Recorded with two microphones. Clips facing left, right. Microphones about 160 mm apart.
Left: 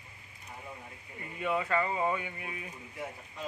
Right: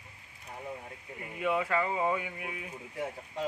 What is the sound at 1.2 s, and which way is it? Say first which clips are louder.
Speech: right 2 dB; 10° right (ahead or behind).